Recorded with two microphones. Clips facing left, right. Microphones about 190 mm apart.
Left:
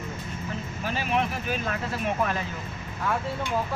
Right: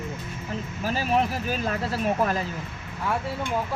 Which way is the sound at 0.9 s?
35° right (ahead or behind).